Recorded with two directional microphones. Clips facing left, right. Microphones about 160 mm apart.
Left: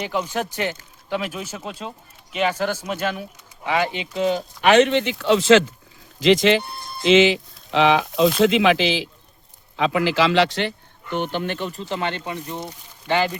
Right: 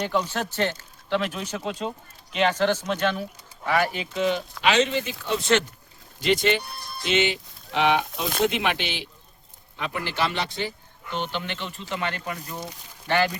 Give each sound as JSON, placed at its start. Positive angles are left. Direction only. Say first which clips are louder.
{"t": 0.0, "sound": "speech", "louder": "left 1 dB", "side_deg": 10}
{"t": 4.6, "sound": "speech", "louder": "left 7 dB", "side_deg": 60}
{"t": 6.6, "sound": "music", "louder": "left 4 dB", "side_deg": 25}
{"t": 7.1, "sound": "speech", "louder": "left 9 dB", "side_deg": 90}